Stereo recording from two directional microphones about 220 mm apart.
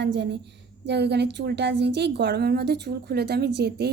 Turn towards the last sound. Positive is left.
turn(degrees=-50)  # may be behind; listen again after turning